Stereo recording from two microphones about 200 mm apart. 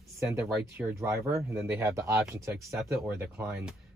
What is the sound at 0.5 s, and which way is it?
Speech, 10° right (ahead or behind).